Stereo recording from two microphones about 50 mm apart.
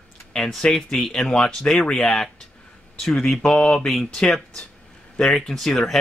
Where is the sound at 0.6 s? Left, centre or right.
Centre.